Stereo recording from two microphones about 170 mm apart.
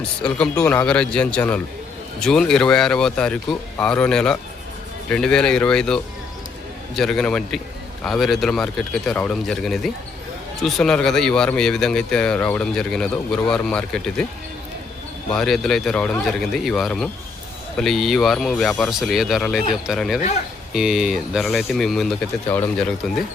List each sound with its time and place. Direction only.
0.2 s speech: 5° left (ahead or behind)
15.3 s speech: centre (ahead or behind)
22.4 s speech: 10° left (ahead or behind)
23.0 s speech: centre (ahead or behind)